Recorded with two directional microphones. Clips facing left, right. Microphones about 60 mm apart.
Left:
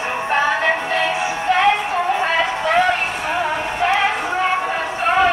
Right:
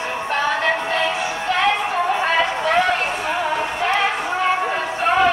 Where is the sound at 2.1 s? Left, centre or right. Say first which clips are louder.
Even; centre.